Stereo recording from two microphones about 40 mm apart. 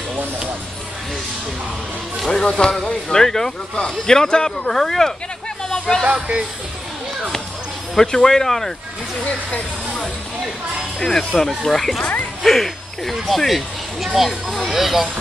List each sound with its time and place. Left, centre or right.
2.2 s speech: centre
5.7 s a sound: centre
6.1 s speech: right
7.9 s speech: centre
11.0 s speech: centre